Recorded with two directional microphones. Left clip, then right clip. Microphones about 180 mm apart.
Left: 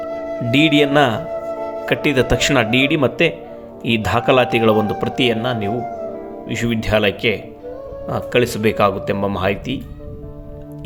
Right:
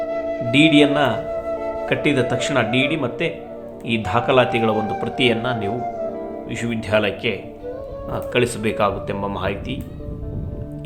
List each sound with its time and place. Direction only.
0.5 s speech: 35° left (ahead or behind)